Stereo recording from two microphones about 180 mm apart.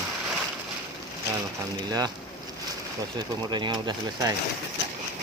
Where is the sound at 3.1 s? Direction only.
25° right (ahead or behind).